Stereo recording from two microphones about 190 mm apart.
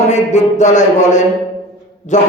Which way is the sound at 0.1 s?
40° left (ahead or behind).